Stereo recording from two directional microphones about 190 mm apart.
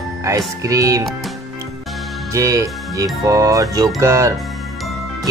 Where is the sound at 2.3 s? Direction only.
15° right (ahead or behind).